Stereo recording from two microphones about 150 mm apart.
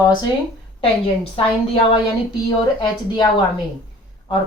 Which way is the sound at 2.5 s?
25° left (ahead or behind).